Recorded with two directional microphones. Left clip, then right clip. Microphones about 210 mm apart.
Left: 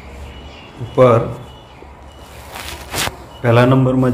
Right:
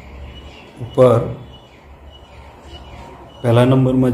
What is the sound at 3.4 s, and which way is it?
Speech, 5° left (ahead or behind).